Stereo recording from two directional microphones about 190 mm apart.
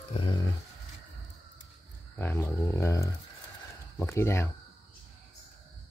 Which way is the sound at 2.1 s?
10° left (ahead or behind).